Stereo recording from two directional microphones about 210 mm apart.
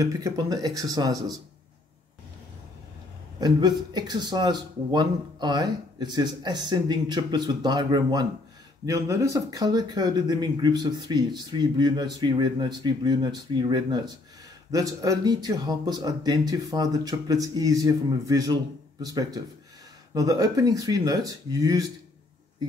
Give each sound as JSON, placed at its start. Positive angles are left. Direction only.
{"t": 0.0, "sound": "speech", "side_deg": -15}
{"t": 3.3, "sound": "speech", "side_deg": -20}